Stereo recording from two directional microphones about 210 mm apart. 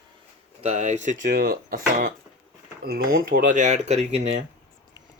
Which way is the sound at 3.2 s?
40° right (ahead or behind).